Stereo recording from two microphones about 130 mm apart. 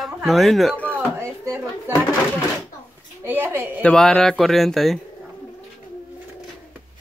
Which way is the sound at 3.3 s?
15° right (ahead or behind).